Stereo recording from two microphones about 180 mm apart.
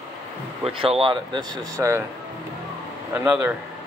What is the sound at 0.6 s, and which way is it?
Speech, 30° right (ahead or behind).